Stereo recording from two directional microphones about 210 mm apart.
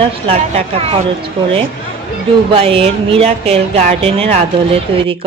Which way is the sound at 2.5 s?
25° right (ahead or behind).